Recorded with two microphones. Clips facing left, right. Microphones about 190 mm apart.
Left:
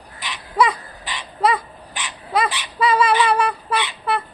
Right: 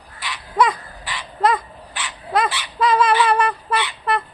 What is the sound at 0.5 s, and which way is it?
Crow, centre (ahead or behind).